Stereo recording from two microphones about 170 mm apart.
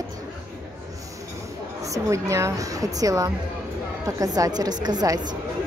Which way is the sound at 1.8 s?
20° right (ahead or behind).